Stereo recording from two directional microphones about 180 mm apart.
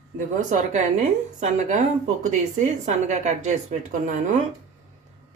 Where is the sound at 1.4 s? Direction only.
40° right (ahead or behind).